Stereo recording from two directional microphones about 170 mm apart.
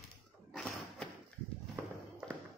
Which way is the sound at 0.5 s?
5° left (ahead or behind).